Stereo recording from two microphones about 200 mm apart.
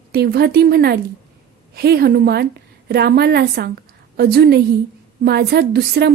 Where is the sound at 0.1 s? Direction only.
55° right (ahead or behind).